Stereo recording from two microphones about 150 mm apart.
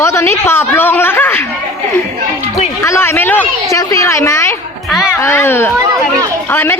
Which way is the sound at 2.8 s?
20° left (ahead or behind).